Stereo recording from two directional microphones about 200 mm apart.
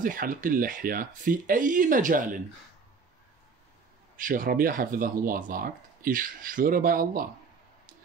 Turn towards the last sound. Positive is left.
turn(degrees=-45)  # may be behind; listen again after turning